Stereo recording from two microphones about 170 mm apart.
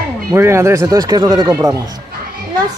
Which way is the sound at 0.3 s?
15° right (ahead or behind).